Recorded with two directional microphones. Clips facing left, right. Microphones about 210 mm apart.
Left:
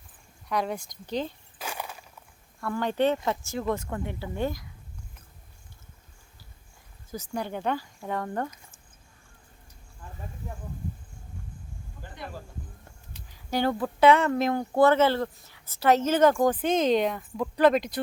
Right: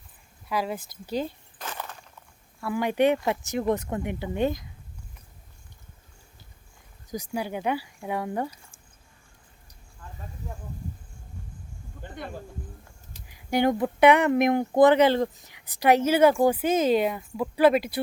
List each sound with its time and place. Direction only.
0.4 s speech: 5° right (ahead or behind)
1.5 s walk: 10° left (ahead or behind)
2.6 s speech: 10° right (ahead or behind)
7.1 s speech: 10° right (ahead or behind)
13.3 s speech: 15° right (ahead or behind)